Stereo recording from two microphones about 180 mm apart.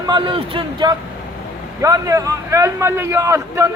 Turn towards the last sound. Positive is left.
turn(degrees=-15)  # may be behind; listen again after turning